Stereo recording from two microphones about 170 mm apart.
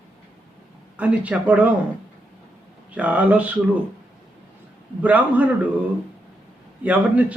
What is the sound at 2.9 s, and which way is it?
Speech, 10° right (ahead or behind).